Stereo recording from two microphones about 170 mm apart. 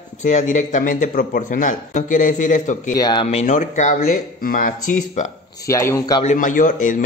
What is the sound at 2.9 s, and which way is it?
A man's voice, 25° left (ahead or behind).